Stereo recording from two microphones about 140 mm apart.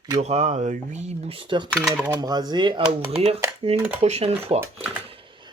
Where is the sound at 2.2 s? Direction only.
30° right (ahead or behind).